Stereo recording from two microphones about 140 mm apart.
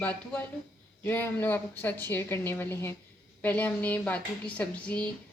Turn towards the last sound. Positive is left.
turn(degrees=10)  # may be behind; listen again after turning